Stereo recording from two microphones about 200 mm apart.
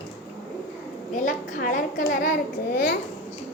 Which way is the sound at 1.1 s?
40° left (ahead or behind).